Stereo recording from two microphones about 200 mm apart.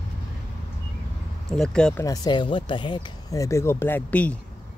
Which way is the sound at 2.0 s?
20° left (ahead or behind).